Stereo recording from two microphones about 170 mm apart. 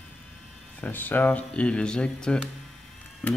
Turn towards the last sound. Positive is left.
turn(degrees=10)  # may be behind; listen again after turning